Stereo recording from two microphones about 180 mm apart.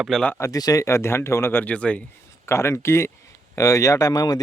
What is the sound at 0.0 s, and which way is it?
Speech, 5° left (ahead or behind).